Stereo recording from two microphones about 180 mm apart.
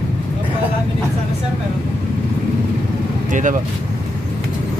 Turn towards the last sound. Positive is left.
turn(degrees=-45)  # may be behind; listen again after turning